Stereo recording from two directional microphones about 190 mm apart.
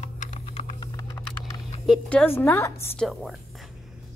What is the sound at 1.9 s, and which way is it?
A woman's voice, 5° left (ahead or behind).